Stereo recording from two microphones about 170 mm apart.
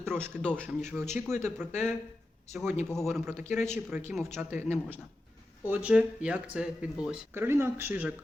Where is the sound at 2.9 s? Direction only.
Centre (ahead or behind).